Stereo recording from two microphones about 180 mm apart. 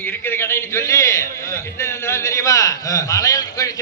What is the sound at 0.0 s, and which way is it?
A man's voice, 10° left (ahead or behind).